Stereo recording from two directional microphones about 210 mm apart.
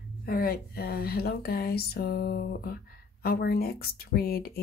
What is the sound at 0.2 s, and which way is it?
Speech, 45° left (ahead or behind).